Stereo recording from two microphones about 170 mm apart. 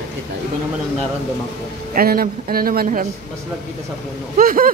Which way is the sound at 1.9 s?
60° right (ahead or behind).